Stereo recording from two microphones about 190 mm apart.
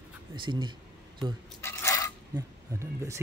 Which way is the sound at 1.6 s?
15° left (ahead or behind).